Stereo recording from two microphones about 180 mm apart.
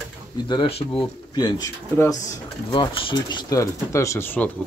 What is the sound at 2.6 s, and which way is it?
Speech, 30° left (ahead or behind).